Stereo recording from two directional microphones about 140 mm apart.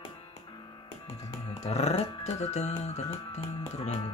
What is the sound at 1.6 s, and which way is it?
Speech, 50° left (ahead or behind).